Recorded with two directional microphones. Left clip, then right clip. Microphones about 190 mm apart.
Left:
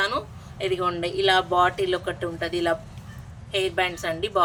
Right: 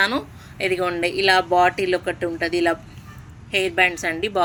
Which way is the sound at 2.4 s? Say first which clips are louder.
Right 3 dB; 25° right (ahead or behind).